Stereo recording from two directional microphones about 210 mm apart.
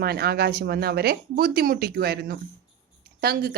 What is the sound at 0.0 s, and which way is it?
A woman's voice, 50° right (ahead or behind).